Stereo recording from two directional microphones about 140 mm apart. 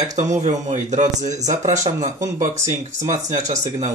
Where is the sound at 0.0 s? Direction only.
55° right (ahead or behind).